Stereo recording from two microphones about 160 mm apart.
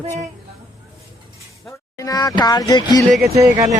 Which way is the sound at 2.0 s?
25° left (ahead or behind).